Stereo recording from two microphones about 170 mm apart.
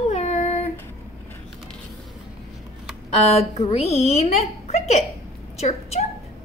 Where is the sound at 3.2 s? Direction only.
40° left (ahead or behind).